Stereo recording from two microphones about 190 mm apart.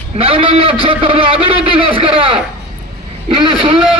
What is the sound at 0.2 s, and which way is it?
Speech, 30° right (ahead or behind).